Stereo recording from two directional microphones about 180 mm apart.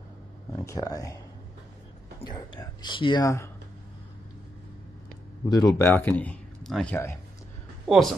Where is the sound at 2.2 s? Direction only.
25° left (ahead or behind).